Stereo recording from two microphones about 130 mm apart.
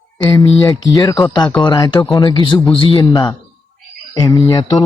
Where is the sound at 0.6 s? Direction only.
25° left (ahead or behind).